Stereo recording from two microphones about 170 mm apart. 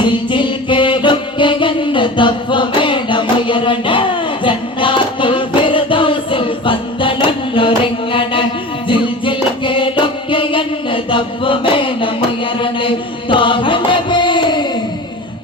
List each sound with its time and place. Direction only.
0.0 s music: 30° left (ahead or behind)
8.1 s mantra: 30° left (ahead or behind)
8.9 s music: 30° left (ahead or behind)
12.5 s chant: 30° left (ahead or behind)